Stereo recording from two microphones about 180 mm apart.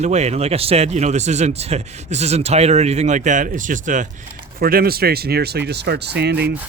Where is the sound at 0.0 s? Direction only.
40° right (ahead or behind).